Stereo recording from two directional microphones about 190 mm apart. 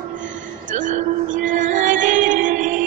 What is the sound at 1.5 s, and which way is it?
Music, 40° right (ahead or behind).